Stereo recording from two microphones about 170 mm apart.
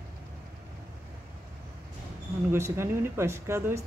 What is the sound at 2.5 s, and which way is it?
Speech, 15° right (ahead or behind).